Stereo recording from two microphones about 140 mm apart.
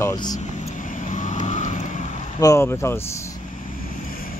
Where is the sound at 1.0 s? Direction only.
60° left (ahead or behind).